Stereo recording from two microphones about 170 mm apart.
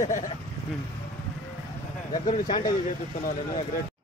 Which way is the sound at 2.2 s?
50° left (ahead or behind).